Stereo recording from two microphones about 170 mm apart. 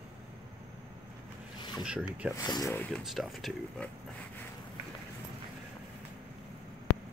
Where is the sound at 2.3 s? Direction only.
20° left (ahead or behind).